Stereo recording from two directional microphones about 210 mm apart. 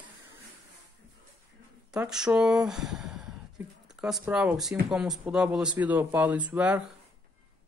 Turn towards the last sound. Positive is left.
turn(degrees=-5)  # may be behind; listen again after turning